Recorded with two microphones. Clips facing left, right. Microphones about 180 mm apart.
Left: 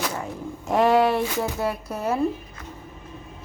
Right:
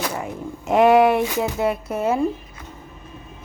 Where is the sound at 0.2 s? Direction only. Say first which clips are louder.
Right 2 dB; 20° right (ahead or behind).